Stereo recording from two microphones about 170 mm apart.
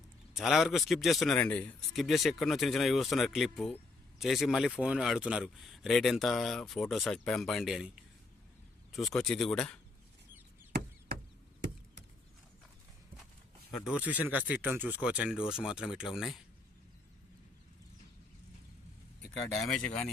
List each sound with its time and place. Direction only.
0.3 s a man's voice: centre (ahead or behind)
10.7 s chop: 65° right (ahead or behind)
13.8 s speech: 10° right (ahead or behind)
19.5 s a man's voice: centre (ahead or behind)